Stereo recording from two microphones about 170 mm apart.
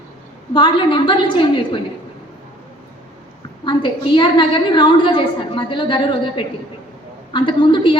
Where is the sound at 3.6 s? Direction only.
30° left (ahead or behind).